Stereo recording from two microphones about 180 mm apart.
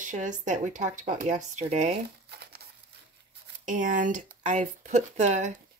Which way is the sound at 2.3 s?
60° right (ahead or behind).